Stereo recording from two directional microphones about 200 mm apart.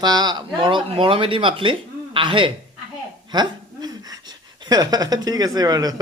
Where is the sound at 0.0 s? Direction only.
20° right (ahead or behind).